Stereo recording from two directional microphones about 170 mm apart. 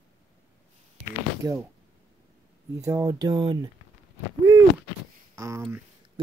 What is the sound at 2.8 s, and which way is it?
Speech, 20° right (ahead or behind).